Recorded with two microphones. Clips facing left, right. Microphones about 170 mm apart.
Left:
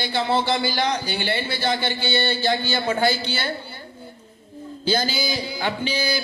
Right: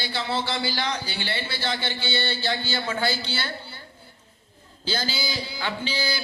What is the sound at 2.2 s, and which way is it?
Speech, 50° left (ahead or behind).